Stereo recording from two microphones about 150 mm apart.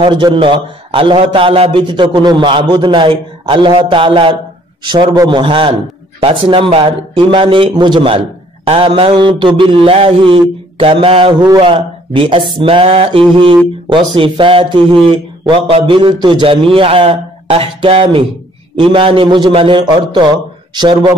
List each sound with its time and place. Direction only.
0.0 s mantra: 30° right (ahead or behind)